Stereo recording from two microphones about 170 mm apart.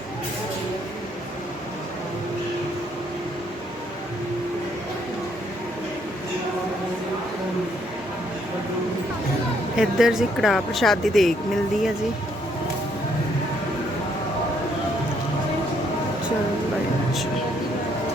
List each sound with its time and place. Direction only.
9.7 s speech: 5° right (ahead or behind)